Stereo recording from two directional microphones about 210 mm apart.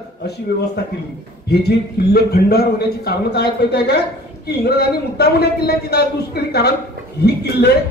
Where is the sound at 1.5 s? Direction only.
50° left (ahead or behind).